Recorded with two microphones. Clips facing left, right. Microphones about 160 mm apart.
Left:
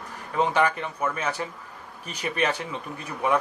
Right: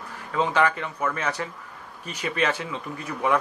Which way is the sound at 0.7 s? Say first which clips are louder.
Right 1 dB; 15° left (ahead or behind).